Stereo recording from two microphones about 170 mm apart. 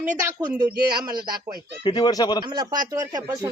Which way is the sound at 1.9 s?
25° left (ahead or behind).